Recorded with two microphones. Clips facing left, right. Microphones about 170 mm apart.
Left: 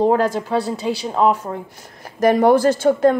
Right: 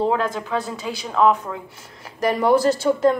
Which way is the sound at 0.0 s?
40° left (ahead or behind).